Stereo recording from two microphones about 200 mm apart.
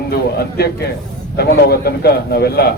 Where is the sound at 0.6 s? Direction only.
50° left (ahead or behind).